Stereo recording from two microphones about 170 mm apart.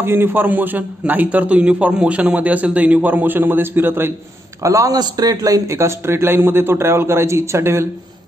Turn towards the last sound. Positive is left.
turn(degrees=-15)  # may be behind; listen again after turning